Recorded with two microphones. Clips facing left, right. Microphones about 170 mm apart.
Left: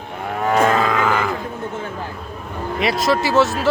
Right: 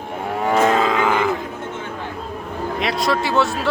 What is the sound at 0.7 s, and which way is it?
Livestock, 20° right (ahead or behind).